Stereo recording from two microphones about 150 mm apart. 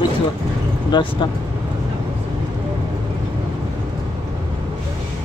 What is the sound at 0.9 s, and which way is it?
Speech, 30° left (ahead or behind).